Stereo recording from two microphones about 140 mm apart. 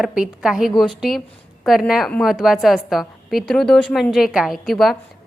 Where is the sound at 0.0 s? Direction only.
5° right (ahead or behind).